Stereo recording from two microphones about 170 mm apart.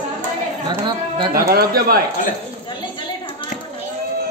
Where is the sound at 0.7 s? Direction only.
25° right (ahead or behind).